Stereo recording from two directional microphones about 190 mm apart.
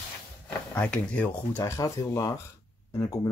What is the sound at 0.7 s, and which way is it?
A man's voice, 5° left (ahead or behind).